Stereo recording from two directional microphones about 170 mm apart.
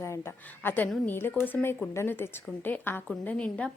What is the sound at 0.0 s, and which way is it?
A woman's voice, 15° left (ahead or behind).